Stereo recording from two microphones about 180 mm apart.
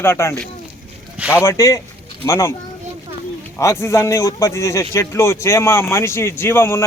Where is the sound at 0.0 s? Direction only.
15° left (ahead or behind).